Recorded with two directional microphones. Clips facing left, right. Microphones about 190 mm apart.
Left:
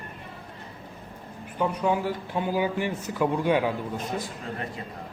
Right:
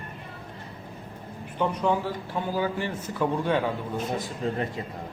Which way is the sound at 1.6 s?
10° left (ahead or behind).